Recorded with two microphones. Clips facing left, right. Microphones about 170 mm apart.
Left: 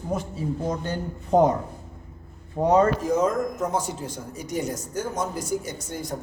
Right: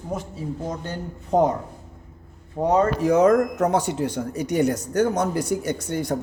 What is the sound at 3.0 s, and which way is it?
A man's voice, 70° right (ahead or behind).